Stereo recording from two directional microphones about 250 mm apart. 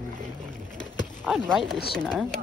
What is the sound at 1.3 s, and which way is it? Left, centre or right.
Speech, centre.